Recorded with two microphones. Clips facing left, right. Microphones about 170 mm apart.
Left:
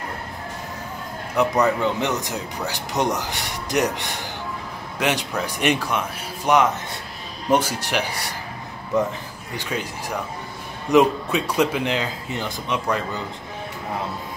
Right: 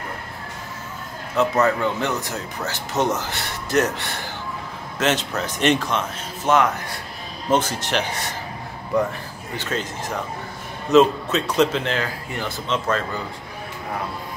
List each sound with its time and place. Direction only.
1.3 s speech: 15° left (ahead or behind)